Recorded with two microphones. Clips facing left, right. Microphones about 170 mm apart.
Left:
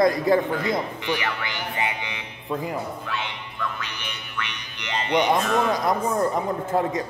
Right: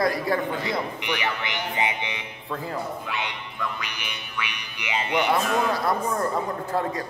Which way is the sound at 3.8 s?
10° right (ahead or behind).